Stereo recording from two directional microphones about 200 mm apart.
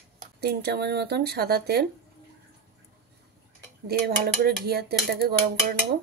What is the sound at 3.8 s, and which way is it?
Speech, 50° right (ahead or behind).